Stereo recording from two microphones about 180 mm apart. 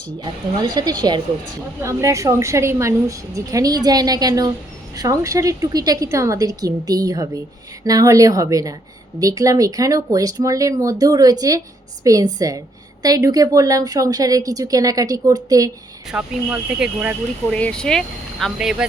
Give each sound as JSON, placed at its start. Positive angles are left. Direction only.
{"t": 0.2, "sound": "a woman's voice", "side_deg": -20}
{"t": 16.0, "sound": "a woman's voice", "side_deg": -5}
{"t": 17.5, "sound": "speech", "side_deg": 5}